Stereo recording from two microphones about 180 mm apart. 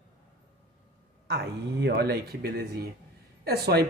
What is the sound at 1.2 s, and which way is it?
A man's voice, 70° right (ahead or behind).